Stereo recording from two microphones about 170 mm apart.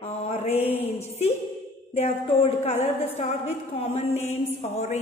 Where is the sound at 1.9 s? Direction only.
40° left (ahead or behind).